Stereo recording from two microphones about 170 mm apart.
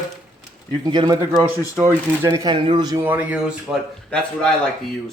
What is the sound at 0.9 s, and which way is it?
Speech, 25° right (ahead or behind).